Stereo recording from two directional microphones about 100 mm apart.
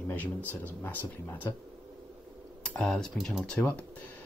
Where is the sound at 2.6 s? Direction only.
5° left (ahead or behind).